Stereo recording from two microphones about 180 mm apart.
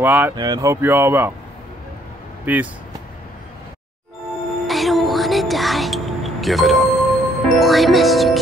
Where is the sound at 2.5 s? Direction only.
10° right (ahead or behind).